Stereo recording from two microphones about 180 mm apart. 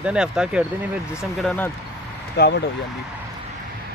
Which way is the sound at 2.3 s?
65° left (ahead or behind).